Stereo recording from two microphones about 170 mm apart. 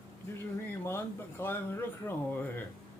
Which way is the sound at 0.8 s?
15° left (ahead or behind).